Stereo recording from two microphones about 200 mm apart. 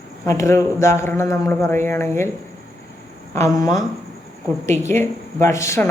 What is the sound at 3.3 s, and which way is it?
Speech, 15° left (ahead or behind).